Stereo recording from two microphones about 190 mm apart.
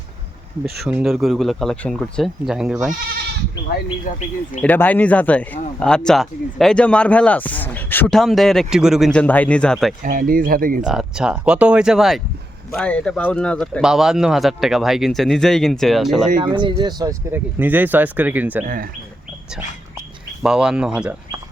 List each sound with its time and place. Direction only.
0.9 s speech: 5° right (ahead or behind)
4.1 s speech: 45° left (ahead or behind)
4.6 s speech: 10° left (ahead or behind)
10.0 s speech: 45° right (ahead or behind)
10.8 s speech: 5° right (ahead or behind)
16.4 s speech: 25° right (ahead or behind); by 18.6 s 10° right (ahead or behind)
18.6 s speech: 45° right (ahead or behind)
19.5 s speech: 5° right (ahead or behind)